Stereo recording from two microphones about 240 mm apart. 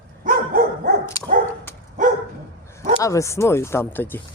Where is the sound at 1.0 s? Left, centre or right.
Centre.